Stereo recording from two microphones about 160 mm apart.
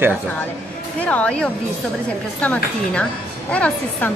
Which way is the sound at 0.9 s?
10° left (ahead or behind).